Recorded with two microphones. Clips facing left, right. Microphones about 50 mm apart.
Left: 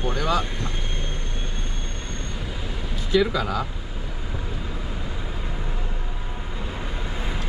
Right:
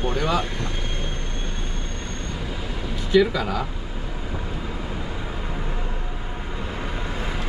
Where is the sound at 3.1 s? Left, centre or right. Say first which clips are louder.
Right 2 dB; centre.